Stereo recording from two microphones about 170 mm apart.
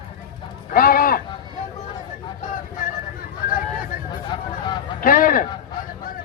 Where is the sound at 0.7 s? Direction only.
55° left (ahead or behind).